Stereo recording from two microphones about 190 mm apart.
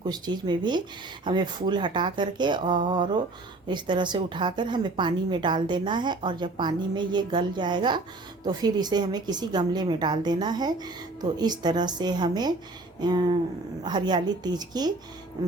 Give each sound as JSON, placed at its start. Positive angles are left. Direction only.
{"t": 0.0, "sound": "a woman's voice", "side_deg": -20}